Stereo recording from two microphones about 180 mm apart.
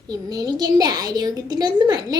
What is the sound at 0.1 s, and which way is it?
A woman's voice, 20° right (ahead or behind).